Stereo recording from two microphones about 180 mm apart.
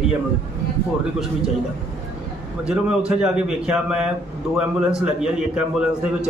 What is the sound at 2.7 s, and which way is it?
A man's voice, 5° right (ahead or behind).